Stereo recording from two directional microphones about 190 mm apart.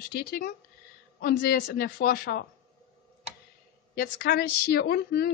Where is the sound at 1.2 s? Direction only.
55° left (ahead or behind).